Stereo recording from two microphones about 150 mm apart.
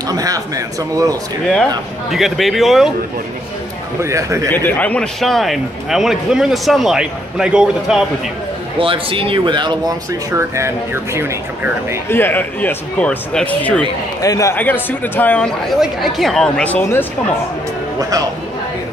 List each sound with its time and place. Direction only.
0.1 s a man's voice: 25° right (ahead or behind)
2.0 s a man's voice: centre (ahead or behind)
4.0 s a man's voice: 20° right (ahead or behind)
4.5 s a man's voice: 10° left (ahead or behind); by 8.0 s 5° right (ahead or behind)
8.7 s speech: 35° right (ahead or behind)
10.3 s speech: 20° right (ahead or behind)
12.1 s speech: 15° left (ahead or behind)
14.2 s speech: 20° left (ahead or behind)